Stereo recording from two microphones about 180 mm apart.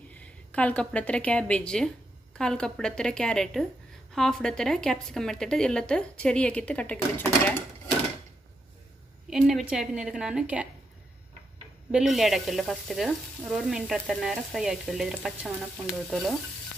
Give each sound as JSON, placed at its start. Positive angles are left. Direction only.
{"t": 0.1, "sound": "a woman's voice", "side_deg": 10}
{"t": 2.3, "sound": "frying", "side_deg": 5}
{"t": 9.3, "sound": "frying", "side_deg": 0}
{"t": 11.9, "sound": "frying", "side_deg": 0}